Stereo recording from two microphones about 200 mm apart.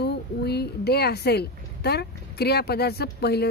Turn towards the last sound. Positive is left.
turn(degrees=55)  # may be behind; listen again after turning